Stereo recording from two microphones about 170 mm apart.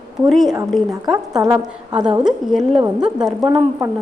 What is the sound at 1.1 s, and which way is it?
A woman's voice, 20° right (ahead or behind).